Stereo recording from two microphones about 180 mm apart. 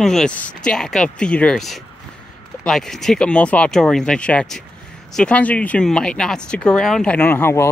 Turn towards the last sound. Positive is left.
turn(degrees=15)  # may be behind; listen again after turning